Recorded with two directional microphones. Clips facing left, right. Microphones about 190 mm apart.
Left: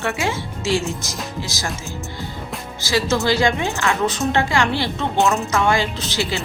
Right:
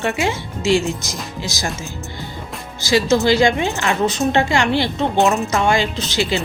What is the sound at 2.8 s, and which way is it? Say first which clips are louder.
A woman's voice: right 4 dB; 15° right (ahead or behind).